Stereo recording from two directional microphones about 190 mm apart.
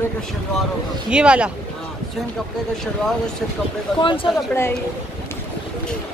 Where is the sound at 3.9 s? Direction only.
25° left (ahead or behind).